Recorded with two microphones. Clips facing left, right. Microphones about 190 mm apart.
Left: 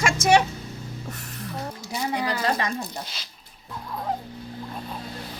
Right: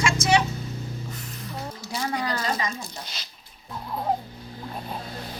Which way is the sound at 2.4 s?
60° left (ahead or behind).